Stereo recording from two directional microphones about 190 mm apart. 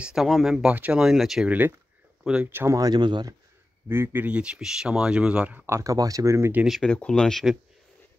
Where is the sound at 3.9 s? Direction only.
10° right (ahead or behind).